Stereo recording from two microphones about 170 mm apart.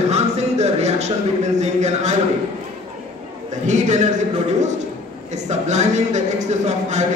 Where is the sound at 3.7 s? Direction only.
45° right (ahead or behind).